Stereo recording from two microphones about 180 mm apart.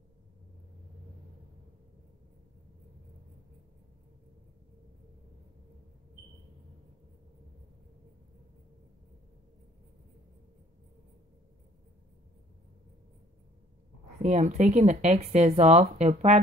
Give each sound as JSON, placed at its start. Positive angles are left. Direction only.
{"t": 14.2, "sound": "speech", "side_deg": -40}